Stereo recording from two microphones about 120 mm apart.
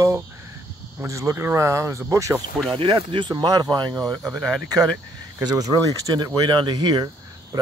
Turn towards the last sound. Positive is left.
turn(degrees=-35)  # may be behind; listen again after turning